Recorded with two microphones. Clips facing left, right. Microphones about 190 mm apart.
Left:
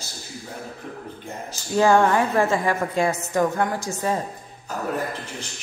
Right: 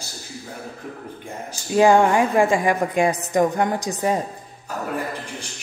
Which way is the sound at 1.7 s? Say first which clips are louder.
Right 2 dB; 15° right (ahead or behind).